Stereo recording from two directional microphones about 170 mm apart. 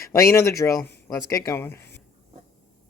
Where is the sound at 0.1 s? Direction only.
15° left (ahead or behind).